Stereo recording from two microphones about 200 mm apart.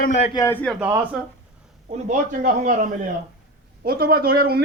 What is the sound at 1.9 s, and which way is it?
A man's voice, 40° right (ahead or behind).